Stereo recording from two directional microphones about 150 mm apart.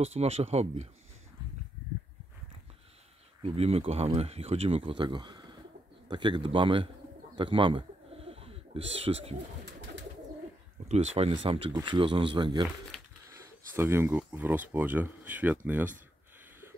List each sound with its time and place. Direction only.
0.0 s speech: 45° right (ahead or behind)
3.4 s speech: 40° right (ahead or behind)
7.3 s bird: 35° right (ahead or behind)
10.9 s speech: 45° right (ahead or behind)
13.7 s speech: 15° right (ahead or behind)